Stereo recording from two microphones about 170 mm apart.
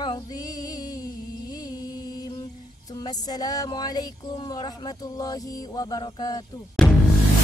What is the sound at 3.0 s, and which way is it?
Speech, 25° left (ahead or behind).